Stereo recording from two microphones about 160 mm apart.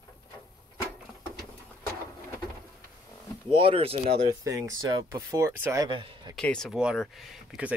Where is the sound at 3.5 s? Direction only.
35° right (ahead or behind).